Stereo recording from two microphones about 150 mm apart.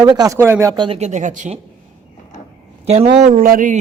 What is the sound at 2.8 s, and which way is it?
Speech, 45° right (ahead or behind).